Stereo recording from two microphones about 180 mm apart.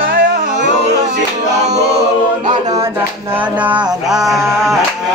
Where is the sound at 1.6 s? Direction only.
40° right (ahead or behind).